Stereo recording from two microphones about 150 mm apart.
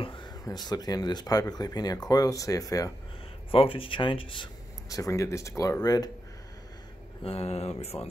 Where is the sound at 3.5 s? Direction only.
35° left (ahead or behind).